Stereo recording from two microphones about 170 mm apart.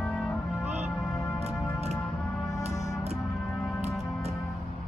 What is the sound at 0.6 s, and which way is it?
Music, 40° right (ahead or behind).